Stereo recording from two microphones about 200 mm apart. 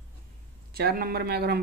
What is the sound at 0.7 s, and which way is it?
Speech, 50° right (ahead or behind).